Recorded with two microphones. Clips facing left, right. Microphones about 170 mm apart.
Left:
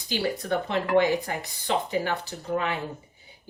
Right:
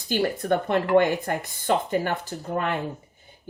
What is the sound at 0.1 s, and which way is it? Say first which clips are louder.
Speech: right 4 dB; 50° right (ahead or behind).